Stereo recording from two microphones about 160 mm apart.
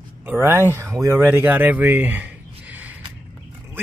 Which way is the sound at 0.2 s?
15° right (ahead or behind).